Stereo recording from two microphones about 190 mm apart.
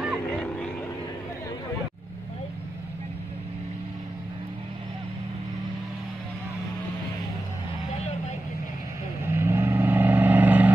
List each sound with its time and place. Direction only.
0.0 s vehicle: 5° left (ahead or behind)
9.2 s vehicle: 15° right (ahead or behind)